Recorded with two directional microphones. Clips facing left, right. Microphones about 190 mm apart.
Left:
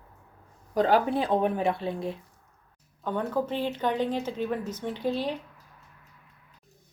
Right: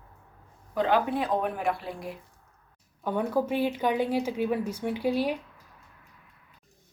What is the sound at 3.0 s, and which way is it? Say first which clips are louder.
Speech: right 2 dB; 10° right (ahead or behind).